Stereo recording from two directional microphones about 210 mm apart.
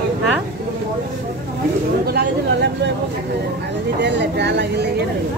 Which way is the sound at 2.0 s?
50° right (ahead or behind).